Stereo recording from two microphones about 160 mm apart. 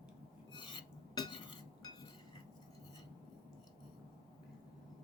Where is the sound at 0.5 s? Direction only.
30° left (ahead or behind).